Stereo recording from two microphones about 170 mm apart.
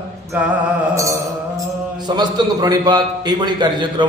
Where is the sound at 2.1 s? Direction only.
25° right (ahead or behind).